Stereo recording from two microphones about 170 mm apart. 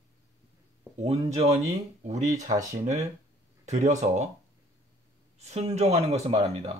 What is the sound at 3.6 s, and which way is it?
Speech, 45° right (ahead or behind).